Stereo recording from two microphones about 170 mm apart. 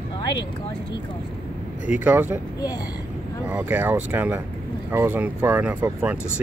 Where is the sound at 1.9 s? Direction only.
10° right (ahead or behind).